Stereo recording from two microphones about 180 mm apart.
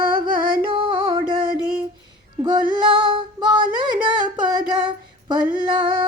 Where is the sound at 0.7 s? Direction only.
30° right (ahead or behind).